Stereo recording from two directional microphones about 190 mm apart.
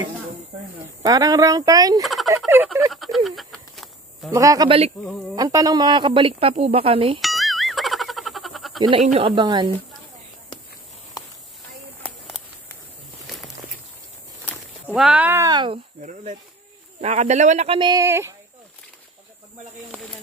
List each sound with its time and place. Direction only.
1.0 s a woman's voice: 20° right (ahead or behind)
2.9 s speech: centre (ahead or behind)
3.7 s insect: centre (ahead or behind)
4.3 s a woman's voice: 15° right (ahead or behind)
7.2 s boing: centre (ahead or behind)
8.8 s a woman's voice: 30° right (ahead or behind)
12.0 s a sound: 5° left (ahead or behind)
15.0 s speech: 5° right (ahead or behind); by 15.8 s 25° right (ahead or behind)
16.0 s a man's voice: 40° right (ahead or behind); by 18.3 s 15° right (ahead or behind)